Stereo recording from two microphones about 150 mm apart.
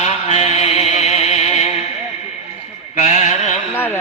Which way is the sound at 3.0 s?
45° left (ahead or behind).